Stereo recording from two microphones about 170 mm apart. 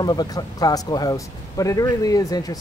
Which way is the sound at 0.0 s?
25° left (ahead or behind).